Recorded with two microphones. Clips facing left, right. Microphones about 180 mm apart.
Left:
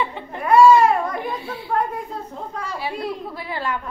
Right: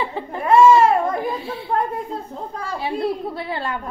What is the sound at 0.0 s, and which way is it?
Crying, 30° right (ahead or behind).